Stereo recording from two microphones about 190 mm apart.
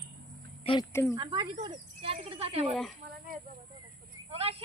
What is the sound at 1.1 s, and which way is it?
Speech, 25° right (ahead or behind).